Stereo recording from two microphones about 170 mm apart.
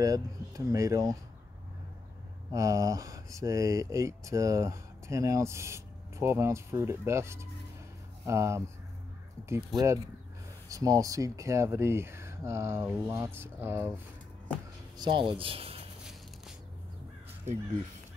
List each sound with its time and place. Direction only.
0.0 s speech: 20° right (ahead or behind)
2.5 s speech: 20° right (ahead or behind)
9.7 s speech: centre (ahead or behind)
10.7 s speech: 20° right (ahead or behind)
15.0 s speech: 25° right (ahead or behind)
16.0 s walk: 5° right (ahead or behind)